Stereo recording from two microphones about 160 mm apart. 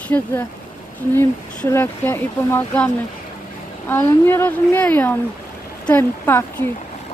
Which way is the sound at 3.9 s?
15° left (ahead or behind).